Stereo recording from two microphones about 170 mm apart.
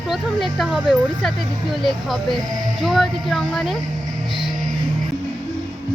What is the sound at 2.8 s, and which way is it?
Speech, centre (ahead or behind).